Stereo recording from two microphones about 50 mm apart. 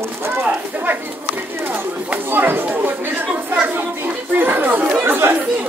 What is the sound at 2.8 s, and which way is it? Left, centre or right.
Chatter, right.